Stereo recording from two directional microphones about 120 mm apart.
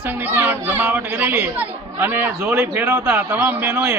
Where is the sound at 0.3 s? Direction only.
15° right (ahead or behind).